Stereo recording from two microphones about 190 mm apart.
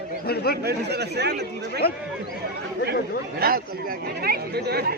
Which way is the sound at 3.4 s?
50° right (ahead or behind).